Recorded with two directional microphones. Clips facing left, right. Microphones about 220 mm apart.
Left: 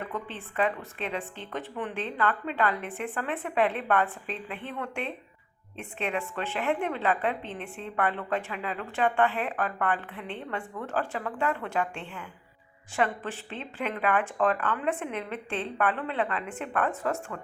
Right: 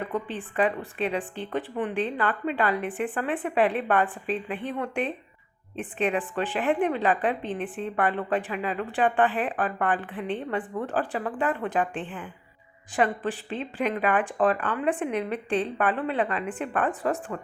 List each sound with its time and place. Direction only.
0.3 s a woman's voice: 15° right (ahead or behind)
17.3 s a woman's voice: 30° right (ahead or behind)